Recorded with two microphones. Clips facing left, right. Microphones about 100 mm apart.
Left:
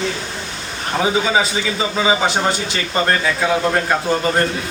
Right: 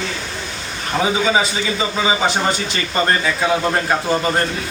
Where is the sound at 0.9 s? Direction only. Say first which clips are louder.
Even; centre (ahead or behind).